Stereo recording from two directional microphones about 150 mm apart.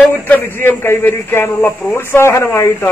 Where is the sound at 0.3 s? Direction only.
15° left (ahead or behind).